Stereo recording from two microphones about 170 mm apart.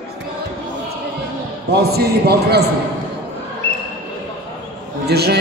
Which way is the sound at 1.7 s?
70° right (ahead or behind).